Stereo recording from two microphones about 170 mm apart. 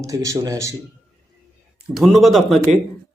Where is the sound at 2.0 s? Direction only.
Centre (ahead or behind).